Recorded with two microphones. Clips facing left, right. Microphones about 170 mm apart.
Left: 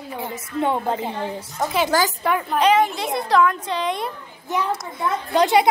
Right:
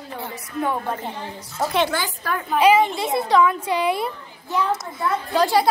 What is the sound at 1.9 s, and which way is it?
Speech, 40° left (ahead or behind).